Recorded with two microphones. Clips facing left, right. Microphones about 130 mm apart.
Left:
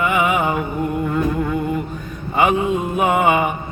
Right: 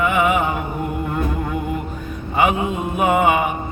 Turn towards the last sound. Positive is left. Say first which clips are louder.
# even
turn(degrees=0)  # may be behind; listen again after turning